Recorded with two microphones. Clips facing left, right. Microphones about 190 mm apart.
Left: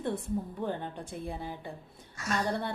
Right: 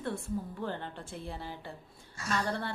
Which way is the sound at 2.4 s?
20° left (ahead or behind).